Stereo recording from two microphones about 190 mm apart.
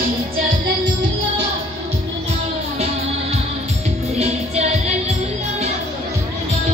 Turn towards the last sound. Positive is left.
turn(degrees=-35)  # may be behind; listen again after turning